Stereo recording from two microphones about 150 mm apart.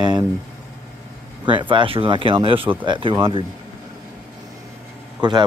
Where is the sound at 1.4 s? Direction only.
30° right (ahead or behind).